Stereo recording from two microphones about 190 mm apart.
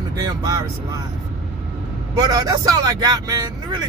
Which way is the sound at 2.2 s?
20° right (ahead or behind).